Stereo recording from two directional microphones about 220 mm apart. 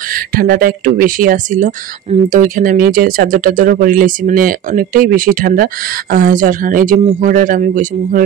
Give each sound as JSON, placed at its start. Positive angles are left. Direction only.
{"t": 0.1, "sound": "speech", "side_deg": -40}